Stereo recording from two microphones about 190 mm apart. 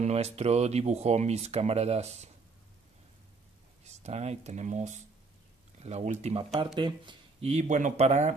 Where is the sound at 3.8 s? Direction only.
35° right (ahead or behind).